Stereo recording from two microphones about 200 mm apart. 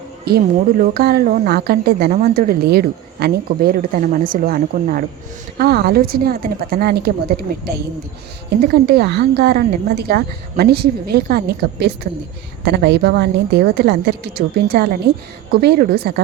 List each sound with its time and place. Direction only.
0.3 s a woman's voice: 50° right (ahead or behind)
8.4 s a woman's voice: 55° right (ahead or behind)